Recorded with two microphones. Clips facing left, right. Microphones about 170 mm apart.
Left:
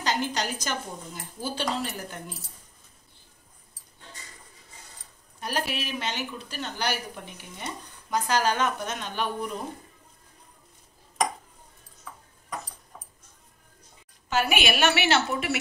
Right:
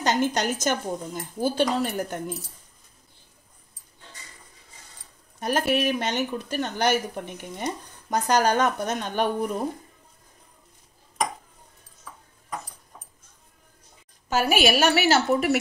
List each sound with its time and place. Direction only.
0.0 s speech: 50° right (ahead or behind)
5.4 s speech: 50° right (ahead or behind)
14.3 s a woman's voice: 40° right (ahead or behind)